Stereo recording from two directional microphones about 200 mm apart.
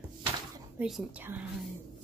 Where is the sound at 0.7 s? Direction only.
5° right (ahead or behind).